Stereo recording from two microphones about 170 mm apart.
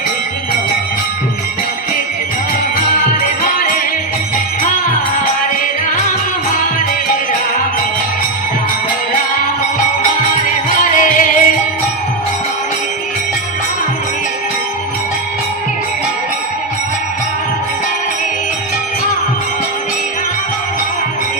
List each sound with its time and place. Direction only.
3.4 s music: 55° left (ahead or behind)
10.9 s music: 50° left (ahead or behind)